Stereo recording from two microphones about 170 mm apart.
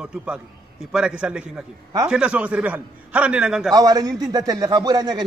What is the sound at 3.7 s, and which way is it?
A man's voice, 20° right (ahead or behind).